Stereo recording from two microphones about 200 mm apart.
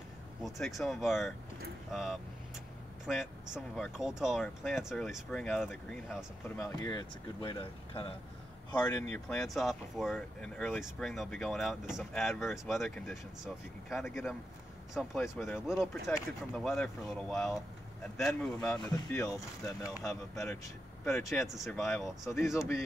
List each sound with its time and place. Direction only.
0.4 s speech: centre (ahead or behind)
6.6 s speech: 20° left (ahead or behind)
9.1 s speech: 5° left (ahead or behind)
15.6 s speech: centre (ahead or behind)
18.9 s speech: 15° left (ahead or behind)
20.0 s speech: 5° left (ahead or behind)
22.3 s speech: 15° left (ahead or behind)